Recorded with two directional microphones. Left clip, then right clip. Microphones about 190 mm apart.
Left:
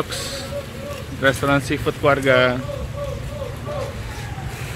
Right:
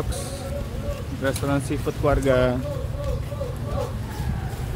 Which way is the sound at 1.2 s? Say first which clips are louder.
Left 8 dB; 10° left (ahead or behind).